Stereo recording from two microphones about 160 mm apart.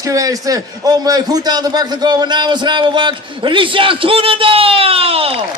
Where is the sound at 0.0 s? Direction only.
20° right (ahead or behind).